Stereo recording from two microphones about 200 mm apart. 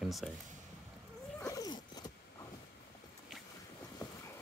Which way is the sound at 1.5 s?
20° left (ahead or behind).